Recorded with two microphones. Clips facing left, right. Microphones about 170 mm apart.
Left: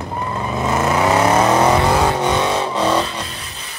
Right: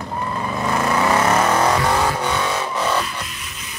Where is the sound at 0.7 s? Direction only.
20° left (ahead or behind).